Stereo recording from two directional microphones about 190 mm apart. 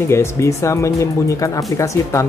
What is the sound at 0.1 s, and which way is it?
Speech, 15° left (ahead or behind).